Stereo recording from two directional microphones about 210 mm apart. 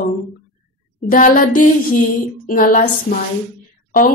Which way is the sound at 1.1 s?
40° left (ahead or behind).